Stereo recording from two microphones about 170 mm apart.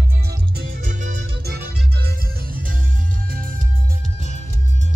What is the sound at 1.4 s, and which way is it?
Music, 70° right (ahead or behind).